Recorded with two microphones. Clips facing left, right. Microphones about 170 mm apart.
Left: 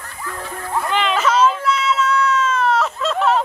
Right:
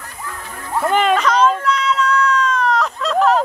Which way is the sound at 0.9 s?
50° right (ahead or behind).